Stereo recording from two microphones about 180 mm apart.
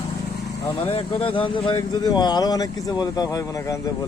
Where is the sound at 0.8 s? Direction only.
30° left (ahead or behind).